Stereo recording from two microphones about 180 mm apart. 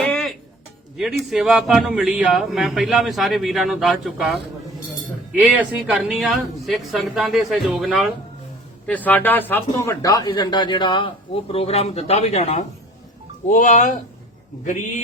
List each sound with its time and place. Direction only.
0.0 s music: 5° left (ahead or behind)
0.9 s a man's voice: centre (ahead or behind); by 15.0 s 45° left (ahead or behind)